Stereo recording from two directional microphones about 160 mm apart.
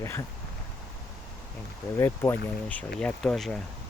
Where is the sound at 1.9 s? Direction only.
20° left (ahead or behind).